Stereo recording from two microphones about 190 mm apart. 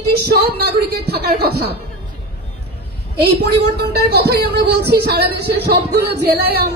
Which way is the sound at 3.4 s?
60° right (ahead or behind).